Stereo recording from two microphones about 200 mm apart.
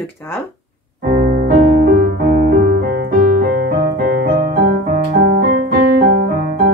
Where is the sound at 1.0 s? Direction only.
40° right (ahead or behind).